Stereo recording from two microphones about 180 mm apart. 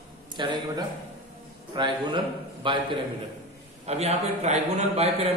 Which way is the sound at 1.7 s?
25° right (ahead or behind).